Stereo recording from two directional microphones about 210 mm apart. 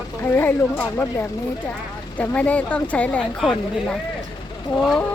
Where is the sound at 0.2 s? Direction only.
10° left (ahead or behind).